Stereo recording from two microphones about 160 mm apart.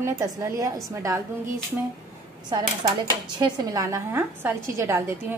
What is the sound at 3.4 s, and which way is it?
A woman's voice, 20° right (ahead or behind).